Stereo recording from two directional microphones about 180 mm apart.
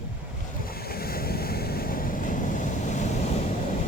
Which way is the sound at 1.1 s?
55° left (ahead or behind).